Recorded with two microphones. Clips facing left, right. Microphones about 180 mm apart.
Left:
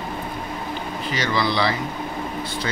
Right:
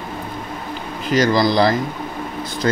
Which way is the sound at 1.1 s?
40° right (ahead or behind).